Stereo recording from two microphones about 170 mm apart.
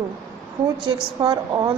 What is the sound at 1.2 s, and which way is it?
Speech, 25° right (ahead or behind).